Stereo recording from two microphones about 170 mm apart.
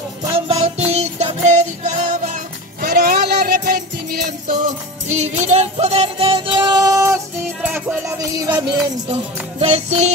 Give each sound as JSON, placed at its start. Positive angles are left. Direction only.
{"t": 0.3, "sound": "music", "side_deg": -40}
{"t": 5.0, "sound": "music", "side_deg": -40}
{"t": 9.6, "sound": "music", "side_deg": -40}